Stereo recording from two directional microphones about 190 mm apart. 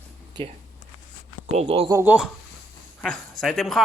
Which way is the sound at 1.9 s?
10° right (ahead or behind).